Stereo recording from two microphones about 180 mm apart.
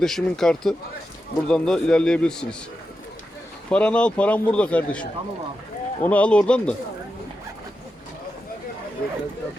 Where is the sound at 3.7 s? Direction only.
5° left (ahead or behind).